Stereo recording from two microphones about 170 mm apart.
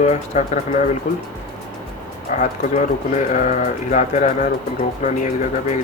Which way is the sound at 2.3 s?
45° left (ahead or behind).